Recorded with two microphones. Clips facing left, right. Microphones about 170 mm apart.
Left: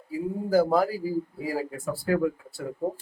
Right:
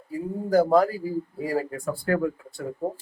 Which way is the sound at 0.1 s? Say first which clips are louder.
Right 1 dB; 5° left (ahead or behind).